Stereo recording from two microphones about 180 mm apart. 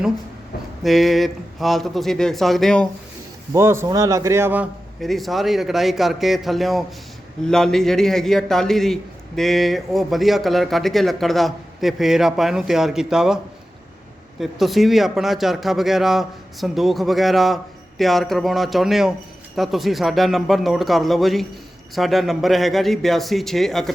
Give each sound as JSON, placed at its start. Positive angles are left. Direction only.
{"t": 0.8, "sound": "a man's voice", "side_deg": 0}
{"t": 3.5, "sound": "a man's voice", "side_deg": -15}
{"t": 4.9, "sound": "a man's voice", "side_deg": 0}